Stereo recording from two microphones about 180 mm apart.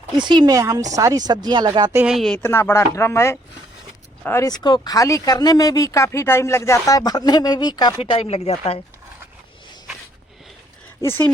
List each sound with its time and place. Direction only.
0.2 s speech: 25° right (ahead or behind)
2.0 s speech: centre (ahead or behind); by 8.8 s 35° left (ahead or behind)
11.0 s speech: 10° left (ahead or behind)